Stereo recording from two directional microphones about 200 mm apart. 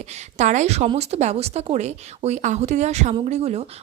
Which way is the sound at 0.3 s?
35° right (ahead or behind).